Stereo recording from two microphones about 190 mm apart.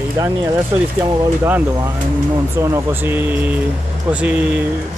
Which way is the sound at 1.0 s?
15° right (ahead or behind).